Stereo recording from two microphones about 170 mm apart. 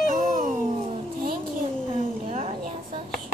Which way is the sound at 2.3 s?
40° right (ahead or behind).